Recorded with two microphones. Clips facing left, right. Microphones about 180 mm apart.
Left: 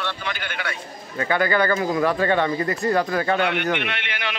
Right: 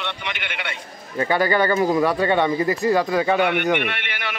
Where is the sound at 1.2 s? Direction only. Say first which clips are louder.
Right 2 dB; 25° right (ahead or behind).